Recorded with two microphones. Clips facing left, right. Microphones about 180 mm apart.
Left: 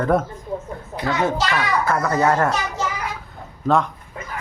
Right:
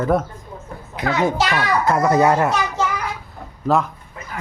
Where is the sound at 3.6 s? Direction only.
5° right (ahead or behind).